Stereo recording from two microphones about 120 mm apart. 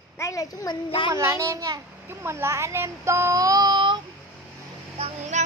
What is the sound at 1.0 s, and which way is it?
Speech, 25° right (ahead or behind).